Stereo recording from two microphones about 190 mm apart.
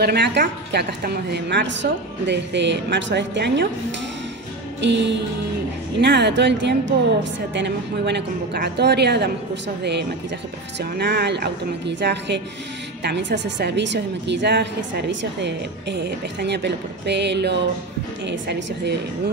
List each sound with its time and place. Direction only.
0.0 s a woman's voice: 60° right (ahead or behind)
4.8 s music: 70° right (ahead or behind)
5.9 s a woman's voice: 65° right (ahead or behind)
10.8 s a woman's voice: 60° right (ahead or behind)